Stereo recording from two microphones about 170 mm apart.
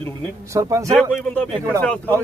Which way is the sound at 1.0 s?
10° left (ahead or behind).